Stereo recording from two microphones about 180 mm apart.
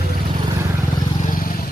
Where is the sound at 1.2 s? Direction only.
50° left (ahead or behind).